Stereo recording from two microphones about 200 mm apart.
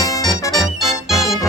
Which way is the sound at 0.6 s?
Centre (ahead or behind).